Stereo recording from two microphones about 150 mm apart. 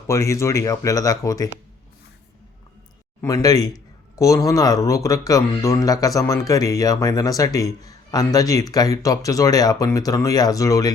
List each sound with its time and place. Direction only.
0.1 s a man's voice: 20° left (ahead or behind)
3.2 s a man's voice: 20° left (ahead or behind)